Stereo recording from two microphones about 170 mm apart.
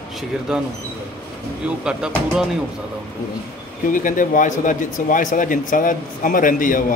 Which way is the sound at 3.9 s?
55° left (ahead or behind).